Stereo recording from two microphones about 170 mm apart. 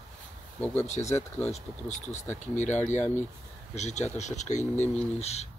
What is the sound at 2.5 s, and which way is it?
Speech, 45° left (ahead or behind).